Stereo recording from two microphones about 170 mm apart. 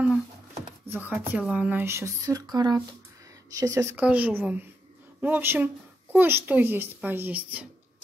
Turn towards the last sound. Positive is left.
turn(degrees=-10)  # may be behind; listen again after turning